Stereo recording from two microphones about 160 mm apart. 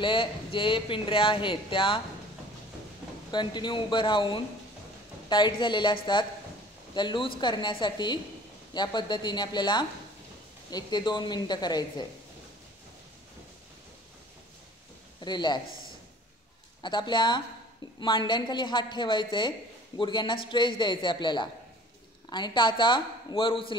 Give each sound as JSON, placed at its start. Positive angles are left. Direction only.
{"t": 0.0, "sound": "speech", "side_deg": 30}
{"t": 3.3, "sound": "a woman's voice", "side_deg": 30}
{"t": 15.1, "sound": "a man's voice", "side_deg": 25}
{"t": 16.8, "sound": "a woman's voice", "side_deg": 30}